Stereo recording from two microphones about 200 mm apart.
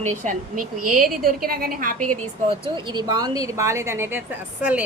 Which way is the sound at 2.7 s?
25° right (ahead or behind).